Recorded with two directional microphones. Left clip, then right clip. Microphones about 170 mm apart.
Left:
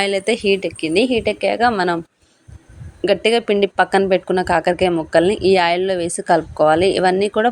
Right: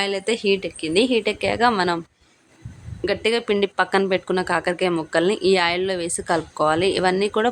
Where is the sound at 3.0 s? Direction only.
15° left (ahead or behind).